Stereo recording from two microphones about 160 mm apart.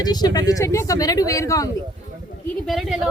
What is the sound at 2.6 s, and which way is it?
Speech, centre (ahead or behind).